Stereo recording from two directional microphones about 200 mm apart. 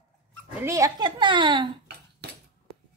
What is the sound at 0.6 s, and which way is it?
A woman's voice, 15° right (ahead or behind).